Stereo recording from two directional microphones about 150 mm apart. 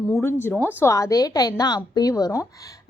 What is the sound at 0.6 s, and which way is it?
A woman's voice, 15° left (ahead or behind).